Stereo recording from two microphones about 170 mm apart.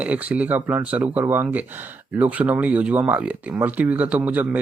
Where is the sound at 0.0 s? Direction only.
10° right (ahead or behind).